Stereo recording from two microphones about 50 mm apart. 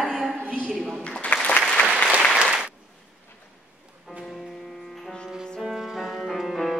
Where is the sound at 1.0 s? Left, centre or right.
Left.